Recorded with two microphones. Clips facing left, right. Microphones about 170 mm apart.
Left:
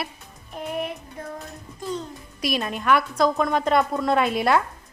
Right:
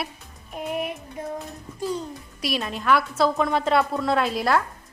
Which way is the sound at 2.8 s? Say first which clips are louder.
Even; 5° right (ahead or behind).